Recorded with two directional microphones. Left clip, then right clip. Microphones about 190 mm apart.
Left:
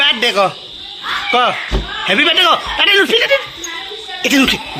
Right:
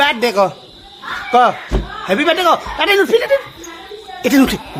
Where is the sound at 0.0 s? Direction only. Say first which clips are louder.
Left 1 dB; 10° right (ahead or behind).